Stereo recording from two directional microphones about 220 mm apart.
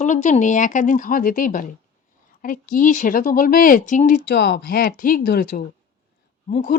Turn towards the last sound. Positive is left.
turn(degrees=40)  # may be behind; listen again after turning